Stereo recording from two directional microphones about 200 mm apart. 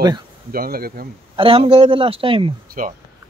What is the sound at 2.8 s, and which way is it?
Speech, 40° right (ahead or behind).